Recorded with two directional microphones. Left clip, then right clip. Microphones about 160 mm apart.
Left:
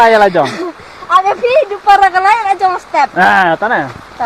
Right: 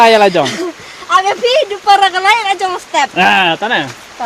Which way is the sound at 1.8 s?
55° right (ahead or behind).